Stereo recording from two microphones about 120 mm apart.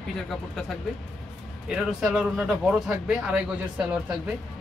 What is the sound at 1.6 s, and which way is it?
Speech, 5° right (ahead or behind).